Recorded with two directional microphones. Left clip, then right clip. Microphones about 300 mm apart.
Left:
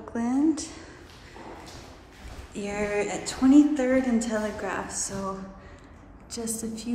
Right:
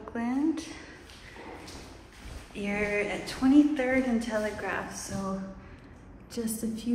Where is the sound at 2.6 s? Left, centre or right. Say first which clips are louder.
Left 1 dB; centre.